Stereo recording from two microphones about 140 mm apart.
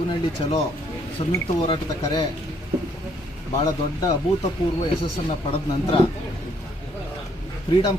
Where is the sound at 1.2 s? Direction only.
35° left (ahead or behind).